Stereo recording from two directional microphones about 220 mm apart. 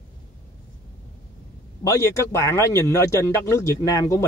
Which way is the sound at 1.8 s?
15° left (ahead or behind).